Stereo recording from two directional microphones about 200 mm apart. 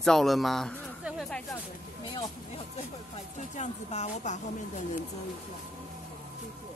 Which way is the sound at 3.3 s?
35° left (ahead or behind).